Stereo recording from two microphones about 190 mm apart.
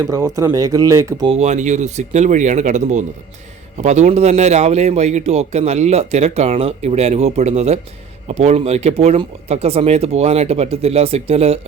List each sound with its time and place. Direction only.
0.0 s speech: 15° right (ahead or behind)
1.3 s speech: 35° right (ahead or behind)